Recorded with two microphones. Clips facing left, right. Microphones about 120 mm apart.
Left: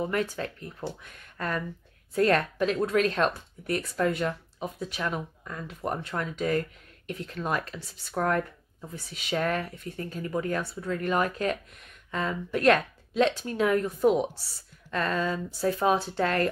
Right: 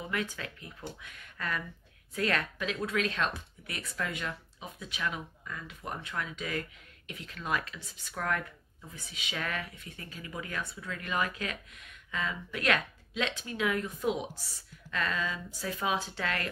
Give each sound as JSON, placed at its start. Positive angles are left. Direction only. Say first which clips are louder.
{"t": 0.0, "sound": "speech", "louder": "left 7 dB", "side_deg": 40}